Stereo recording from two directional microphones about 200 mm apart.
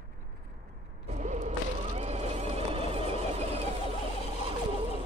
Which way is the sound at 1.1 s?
35° right (ahead or behind).